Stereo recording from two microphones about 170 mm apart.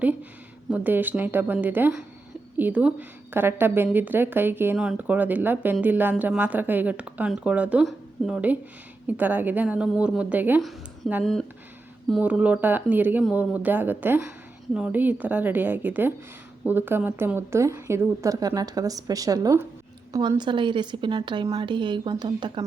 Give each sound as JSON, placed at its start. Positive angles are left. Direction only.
{"t": 0.0, "sound": "a sound", "side_deg": -10}
{"t": 0.7, "sound": "a woman's voice", "side_deg": -10}
{"t": 10.6, "sound": "a woman's voice", "side_deg": 0}